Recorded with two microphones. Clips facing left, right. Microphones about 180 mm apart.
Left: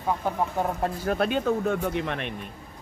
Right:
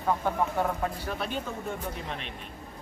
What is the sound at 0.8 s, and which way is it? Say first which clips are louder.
Speech: left 5 dB; 45° left (ahead or behind).